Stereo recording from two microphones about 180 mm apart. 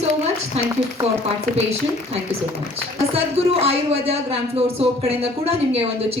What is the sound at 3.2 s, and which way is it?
Speech, 35° right (ahead or behind).